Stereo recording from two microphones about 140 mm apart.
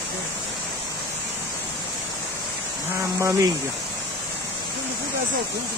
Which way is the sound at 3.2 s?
20° right (ahead or behind).